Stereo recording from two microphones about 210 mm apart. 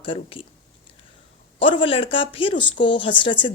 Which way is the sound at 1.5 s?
25° left (ahead or behind).